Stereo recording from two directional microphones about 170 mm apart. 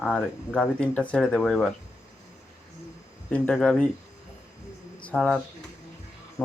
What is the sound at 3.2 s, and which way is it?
Speech, 5° left (ahead or behind).